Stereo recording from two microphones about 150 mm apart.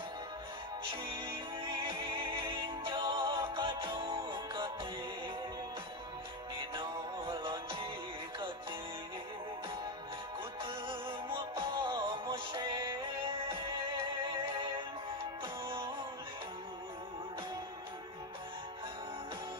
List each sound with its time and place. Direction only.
1.2 s music: 35° right (ahead or behind)
6.7 s music: 30° right (ahead or behind)
10.6 s music: 35° right (ahead or behind)